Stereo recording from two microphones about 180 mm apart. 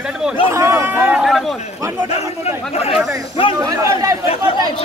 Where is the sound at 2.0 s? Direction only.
35° left (ahead or behind).